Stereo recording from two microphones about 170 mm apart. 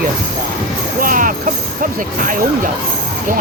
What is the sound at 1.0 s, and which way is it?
Speech, 55° right (ahead or behind).